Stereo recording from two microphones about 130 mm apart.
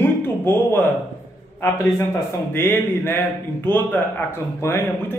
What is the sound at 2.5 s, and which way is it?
Speech, 15° left (ahead or behind).